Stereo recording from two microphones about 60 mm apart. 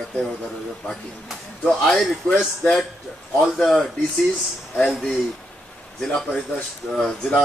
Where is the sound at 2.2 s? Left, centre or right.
Left.